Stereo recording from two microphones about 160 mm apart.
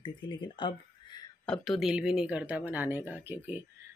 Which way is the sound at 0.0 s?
30° left (ahead or behind).